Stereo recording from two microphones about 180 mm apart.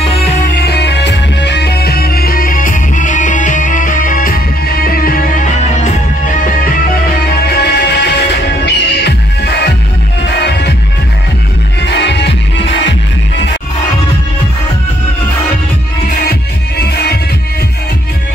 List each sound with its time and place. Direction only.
0.6 s music: 65° left (ahead or behind); by 6.7 s 45° left (ahead or behind)
7.4 s music: 65° left (ahead or behind)
11.8 s music: 70° left (ahead or behind)
16.3 s music: 65° left (ahead or behind)